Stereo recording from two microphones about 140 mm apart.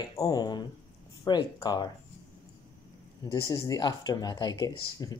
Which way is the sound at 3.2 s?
25° left (ahead or behind).